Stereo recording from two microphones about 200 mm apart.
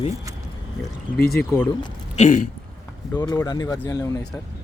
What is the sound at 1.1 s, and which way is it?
Speech, 50° left (ahead or behind).